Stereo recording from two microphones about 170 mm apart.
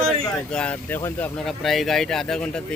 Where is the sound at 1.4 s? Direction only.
Centre (ahead or behind).